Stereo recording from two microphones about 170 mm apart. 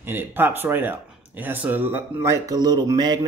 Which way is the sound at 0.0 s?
10° right (ahead or behind).